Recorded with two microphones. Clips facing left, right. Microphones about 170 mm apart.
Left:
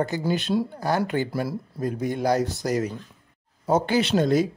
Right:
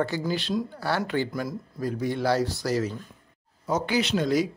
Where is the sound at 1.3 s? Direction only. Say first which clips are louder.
Left 3 dB; 30° left (ahead or behind).